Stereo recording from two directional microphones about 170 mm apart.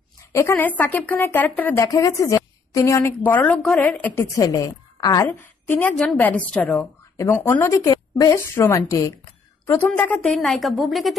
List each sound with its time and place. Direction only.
0.3 s a woman's voice: 15° left (ahead or behind); by 11.1 s centre (ahead or behind)